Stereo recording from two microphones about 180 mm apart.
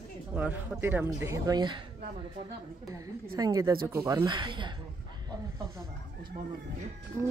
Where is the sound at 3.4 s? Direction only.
20° right (ahead or behind).